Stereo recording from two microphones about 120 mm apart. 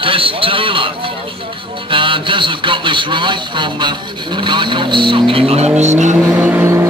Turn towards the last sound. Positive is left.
turn(degrees=-25)  # may be behind; listen again after turning